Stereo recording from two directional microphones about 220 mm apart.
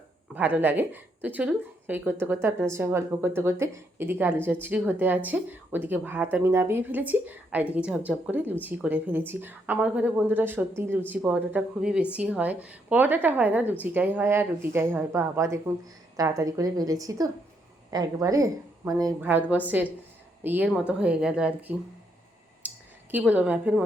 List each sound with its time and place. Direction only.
0.3 s speech: 5° right (ahead or behind)
22.6 s a sound: 5° right (ahead or behind)
23.1 s speech: 5° right (ahead or behind)